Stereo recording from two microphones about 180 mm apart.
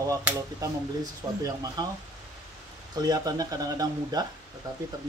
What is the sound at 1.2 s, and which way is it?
Speech, 15° right (ahead or behind).